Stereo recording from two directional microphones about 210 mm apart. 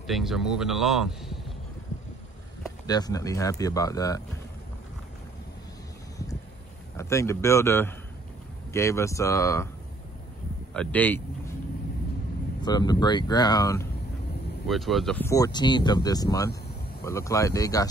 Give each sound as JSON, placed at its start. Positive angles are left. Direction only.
{"t": 0.0, "sound": "speech", "side_deg": 0}
{"t": 2.9, "sound": "speech", "side_deg": 20}
{"t": 7.0, "sound": "speech", "side_deg": 15}
{"t": 10.7, "sound": "speech", "side_deg": 5}
{"t": 12.6, "sound": "speech", "side_deg": 20}
{"t": 14.7, "sound": "speech", "side_deg": 0}
{"t": 15.2, "sound": "speech", "side_deg": 15}